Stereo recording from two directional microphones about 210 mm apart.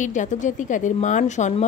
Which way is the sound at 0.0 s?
35° left (ahead or behind).